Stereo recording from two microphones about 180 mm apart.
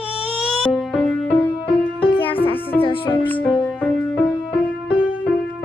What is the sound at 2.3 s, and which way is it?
Music, 30° left (ahead or behind).